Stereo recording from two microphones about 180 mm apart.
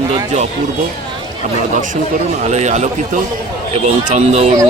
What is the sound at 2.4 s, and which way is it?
Speech, 40° right (ahead or behind).